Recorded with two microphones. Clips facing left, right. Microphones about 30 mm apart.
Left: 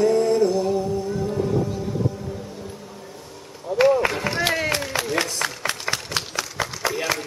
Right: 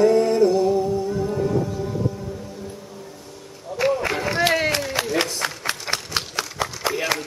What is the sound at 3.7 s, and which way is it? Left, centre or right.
Run, left.